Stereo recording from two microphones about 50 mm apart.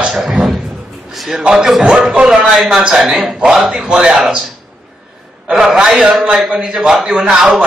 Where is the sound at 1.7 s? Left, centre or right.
Centre.